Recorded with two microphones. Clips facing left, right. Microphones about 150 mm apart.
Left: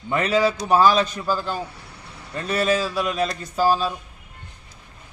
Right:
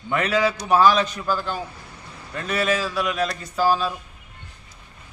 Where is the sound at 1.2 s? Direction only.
5° left (ahead or behind).